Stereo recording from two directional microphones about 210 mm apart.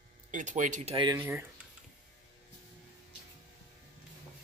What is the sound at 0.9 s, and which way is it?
Speech, 20° right (ahead or behind).